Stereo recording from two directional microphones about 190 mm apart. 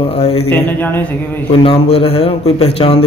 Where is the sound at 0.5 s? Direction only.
10° left (ahead or behind).